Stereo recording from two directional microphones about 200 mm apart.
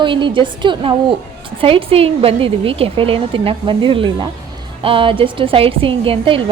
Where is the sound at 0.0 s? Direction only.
25° right (ahead or behind).